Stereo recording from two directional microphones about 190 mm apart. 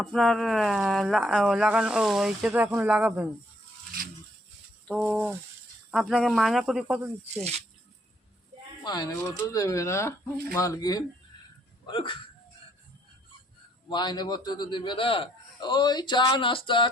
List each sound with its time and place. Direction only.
0.0 s speech: centre (ahead or behind)
4.9 s a sound: 5° right (ahead or behind)
5.9 s speech: centre (ahead or behind)
8.8 s a man's voice: 20° left (ahead or behind)
13.9 s a man's voice: 20° left (ahead or behind)